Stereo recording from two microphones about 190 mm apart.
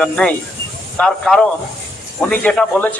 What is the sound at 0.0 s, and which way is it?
A man's voice, 5° left (ahead or behind).